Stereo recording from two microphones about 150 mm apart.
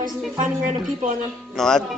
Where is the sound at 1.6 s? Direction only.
5° left (ahead or behind).